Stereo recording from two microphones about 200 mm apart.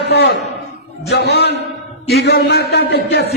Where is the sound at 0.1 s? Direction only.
55° left (ahead or behind).